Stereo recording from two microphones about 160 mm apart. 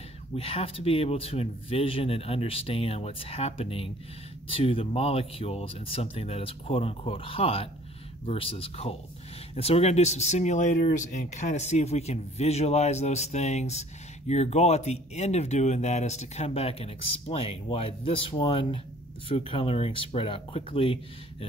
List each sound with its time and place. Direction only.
0.4 s speech: 35° left (ahead or behind)